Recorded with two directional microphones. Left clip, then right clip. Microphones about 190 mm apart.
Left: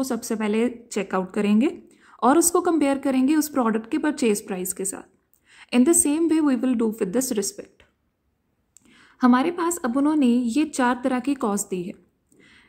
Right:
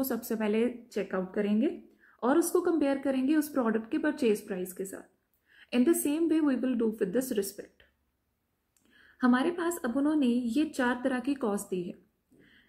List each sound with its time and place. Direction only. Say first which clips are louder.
0.0 s a woman's voice: left 5 dB; 25° left (ahead or behind)
8.9 s a woman's voice: left 8 dB; 30° left (ahead or behind)